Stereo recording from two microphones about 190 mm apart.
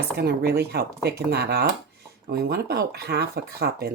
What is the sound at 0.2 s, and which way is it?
Speech, 55° right (ahead or behind).